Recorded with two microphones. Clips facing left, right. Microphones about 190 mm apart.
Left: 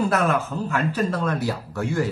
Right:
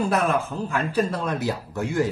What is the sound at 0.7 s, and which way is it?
Speech, 10° right (ahead or behind).